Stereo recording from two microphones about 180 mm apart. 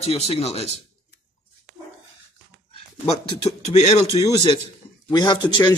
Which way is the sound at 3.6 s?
35° left (ahead or behind).